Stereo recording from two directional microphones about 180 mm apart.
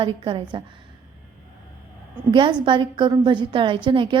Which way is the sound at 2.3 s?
25° right (ahead or behind).